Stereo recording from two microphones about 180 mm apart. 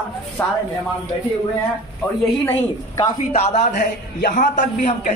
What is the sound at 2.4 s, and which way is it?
Speech, 15° left (ahead or behind).